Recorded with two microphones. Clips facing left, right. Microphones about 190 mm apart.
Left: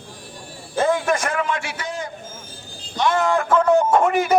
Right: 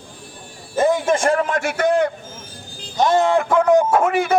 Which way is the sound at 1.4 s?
45° right (ahead or behind).